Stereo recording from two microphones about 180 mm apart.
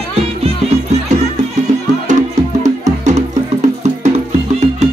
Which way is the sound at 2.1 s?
40° right (ahead or behind).